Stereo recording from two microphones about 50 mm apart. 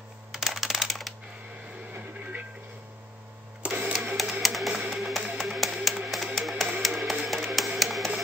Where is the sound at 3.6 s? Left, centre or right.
Right.